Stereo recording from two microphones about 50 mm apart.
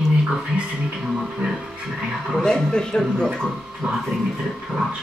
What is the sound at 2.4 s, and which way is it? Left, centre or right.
Speech, centre.